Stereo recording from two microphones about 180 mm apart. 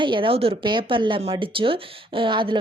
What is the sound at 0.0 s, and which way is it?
Speech, 30° right (ahead or behind).